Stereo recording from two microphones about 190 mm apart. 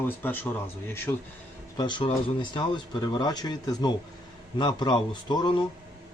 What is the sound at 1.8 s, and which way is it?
Speech, 25° left (ahead or behind).